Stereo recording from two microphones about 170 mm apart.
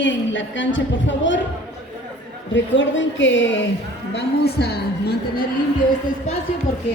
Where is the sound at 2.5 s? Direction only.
90° left.